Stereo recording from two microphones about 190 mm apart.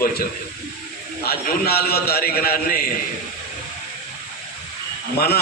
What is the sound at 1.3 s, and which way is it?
A man's voice, 55° left (ahead or behind).